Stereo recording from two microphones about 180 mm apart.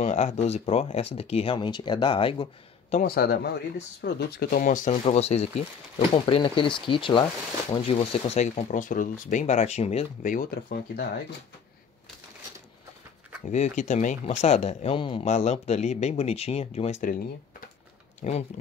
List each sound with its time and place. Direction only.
0.0 s speech: 40° left (ahead or behind)
3.2 s speech: 60° left (ahead or behind); by 4.9 s 45° left (ahead or behind)
5.0 s speech: 35° left (ahead or behind); by 11.1 s 60° left (ahead or behind)
13.5 s speech: 40° left (ahead or behind)
15.2 s speech: 40° left (ahead or behind)